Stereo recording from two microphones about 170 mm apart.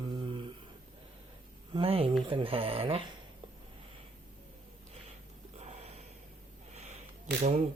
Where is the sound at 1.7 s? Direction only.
35° right (ahead or behind).